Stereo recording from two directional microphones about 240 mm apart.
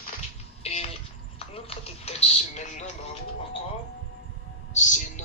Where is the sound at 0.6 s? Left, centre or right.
Left.